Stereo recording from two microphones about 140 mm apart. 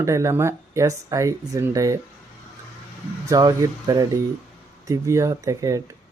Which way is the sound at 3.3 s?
25° right (ahead or behind).